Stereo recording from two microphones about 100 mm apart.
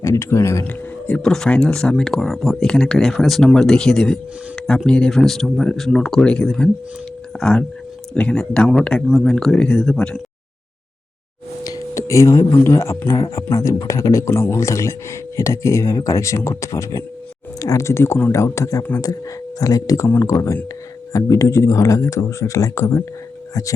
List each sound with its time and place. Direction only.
0.0 s speech: 30° left (ahead or behind)
0.7 s speech: 15° left (ahead or behind)
11.6 s speech: 35° left (ahead or behind)